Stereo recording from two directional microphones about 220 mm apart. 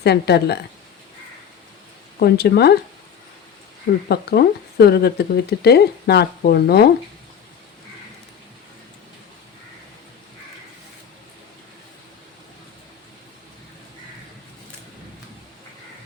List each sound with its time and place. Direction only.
0.0 s speech: 50° left (ahead or behind)
2.1 s speech: 45° left (ahead or behind)
4.1 s speech: 45° left (ahead or behind)